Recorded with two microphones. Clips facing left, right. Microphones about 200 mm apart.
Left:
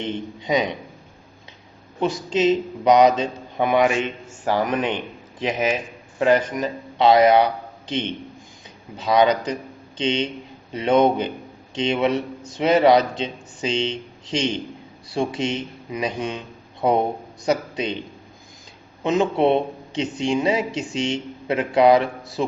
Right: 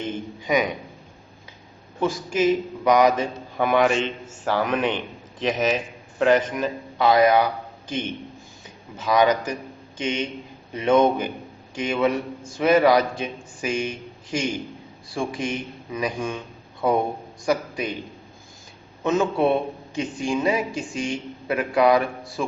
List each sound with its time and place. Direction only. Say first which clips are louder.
0.0 s speech: left 2 dB; 20° left (ahead or behind)
2.0 s speech: left 1 dB; 20° left (ahead or behind)
3.6 s a man's voice: left 1 dB; 5° left (ahead or behind)
7.0 s a man's voice: left 3 dB; 25° left (ahead or behind)
19.0 s speech: left 2 dB; 20° left (ahead or behind)